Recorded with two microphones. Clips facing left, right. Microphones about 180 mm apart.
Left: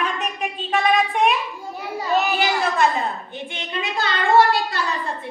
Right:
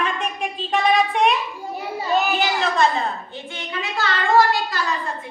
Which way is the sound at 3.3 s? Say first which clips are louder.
Left 1 dB; 20° left (ahead or behind).